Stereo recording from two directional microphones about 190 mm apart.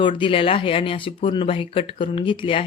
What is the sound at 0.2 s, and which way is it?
Speech, 30° left (ahead or behind).